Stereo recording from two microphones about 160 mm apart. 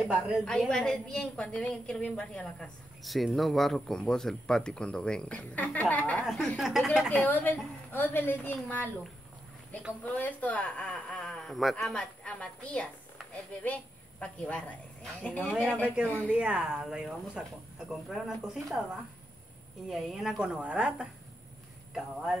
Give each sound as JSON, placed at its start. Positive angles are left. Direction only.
{"t": 0.5, "sound": "a woman's voice", "side_deg": 5}
{"t": 7.2, "sound": "speech", "side_deg": 10}
{"t": 10.0, "sound": "speech", "side_deg": 10}
{"t": 14.2, "sound": "speech", "side_deg": 10}
{"t": 15.8, "sound": "a woman's voice", "side_deg": -10}
{"t": 19.9, "sound": "a woman's voice", "side_deg": 0}